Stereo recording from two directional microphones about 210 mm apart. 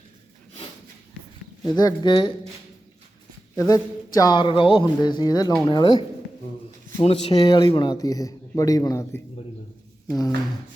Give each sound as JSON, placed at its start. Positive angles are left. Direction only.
{"t": 1.7, "sound": "speech", "side_deg": 20}
{"t": 3.5, "sound": "speech", "side_deg": 15}